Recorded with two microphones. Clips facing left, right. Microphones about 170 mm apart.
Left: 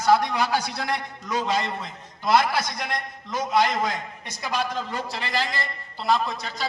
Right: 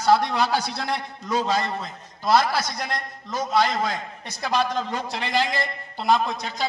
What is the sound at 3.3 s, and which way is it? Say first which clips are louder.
A man's voice: even; 15° left (ahead or behind).